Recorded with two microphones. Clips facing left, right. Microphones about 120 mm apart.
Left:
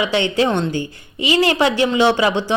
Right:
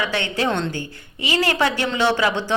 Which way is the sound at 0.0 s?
20° left (ahead or behind).